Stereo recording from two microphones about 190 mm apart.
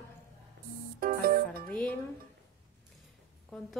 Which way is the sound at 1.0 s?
50° right (ahead or behind).